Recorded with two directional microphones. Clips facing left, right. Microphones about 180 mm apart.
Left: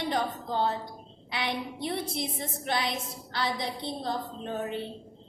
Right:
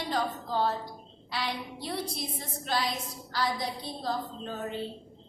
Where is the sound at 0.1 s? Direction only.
20° left (ahead or behind).